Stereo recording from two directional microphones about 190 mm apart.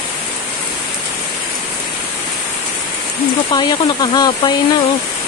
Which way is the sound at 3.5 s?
20° left (ahead or behind).